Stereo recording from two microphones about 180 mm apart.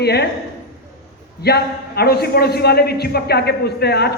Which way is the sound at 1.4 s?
60° left (ahead or behind).